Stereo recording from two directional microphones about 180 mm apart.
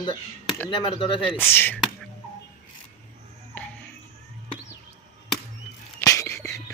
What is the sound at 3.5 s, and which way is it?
Music, 10° left (ahead or behind).